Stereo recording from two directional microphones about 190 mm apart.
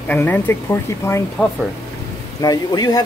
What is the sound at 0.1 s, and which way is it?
Speech, 10° left (ahead or behind).